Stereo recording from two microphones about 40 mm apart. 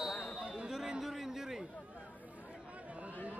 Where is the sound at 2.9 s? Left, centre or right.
Right.